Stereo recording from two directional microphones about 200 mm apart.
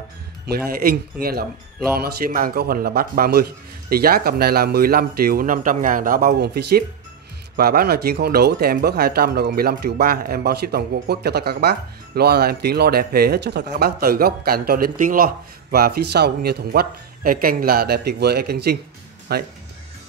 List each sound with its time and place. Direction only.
0.5 s speech: 50° right (ahead or behind)